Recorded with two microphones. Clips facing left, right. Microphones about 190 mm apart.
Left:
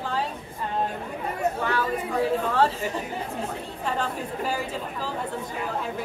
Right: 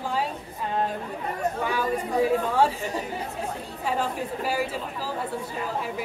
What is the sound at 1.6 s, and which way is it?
A woman's voice, 10° right (ahead or behind).